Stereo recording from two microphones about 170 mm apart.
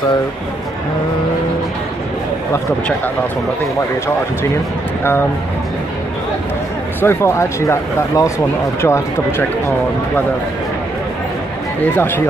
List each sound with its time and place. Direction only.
7.0 s speech: 15° left (ahead or behind)